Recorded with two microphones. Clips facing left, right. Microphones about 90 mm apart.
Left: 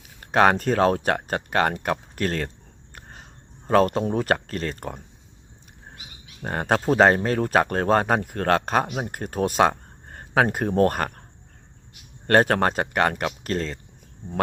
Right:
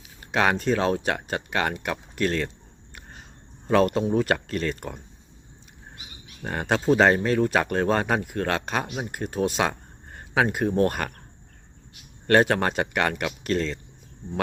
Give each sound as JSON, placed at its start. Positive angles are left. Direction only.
{"t": 0.3, "sound": "speech", "side_deg": 45}
{"t": 3.7, "sound": "speech", "side_deg": 35}
{"t": 6.4, "sound": "speech", "side_deg": 40}
{"t": 12.3, "sound": "speech", "side_deg": 45}